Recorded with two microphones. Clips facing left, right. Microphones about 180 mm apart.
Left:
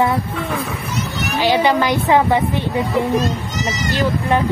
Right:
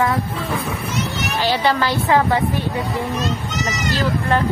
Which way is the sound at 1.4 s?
10° left (ahead or behind).